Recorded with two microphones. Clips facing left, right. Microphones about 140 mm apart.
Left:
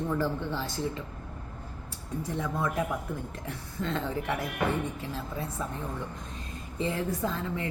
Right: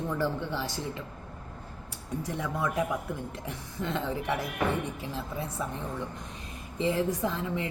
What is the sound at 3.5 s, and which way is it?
Speech, 15° right (ahead or behind).